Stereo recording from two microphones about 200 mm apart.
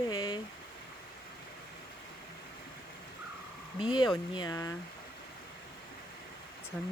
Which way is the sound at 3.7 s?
25° left (ahead or behind).